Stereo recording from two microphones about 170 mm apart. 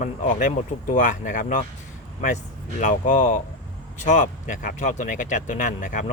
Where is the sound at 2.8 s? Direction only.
45° left (ahead or behind).